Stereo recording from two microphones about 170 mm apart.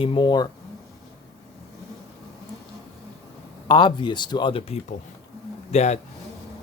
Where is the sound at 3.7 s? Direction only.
25° left (ahead or behind).